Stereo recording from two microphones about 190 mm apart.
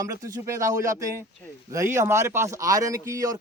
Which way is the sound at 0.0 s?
15° right (ahead or behind).